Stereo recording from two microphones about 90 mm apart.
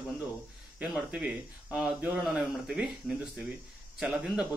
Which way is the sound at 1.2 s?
15° right (ahead or behind).